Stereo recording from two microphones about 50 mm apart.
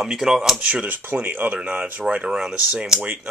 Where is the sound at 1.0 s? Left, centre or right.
Right.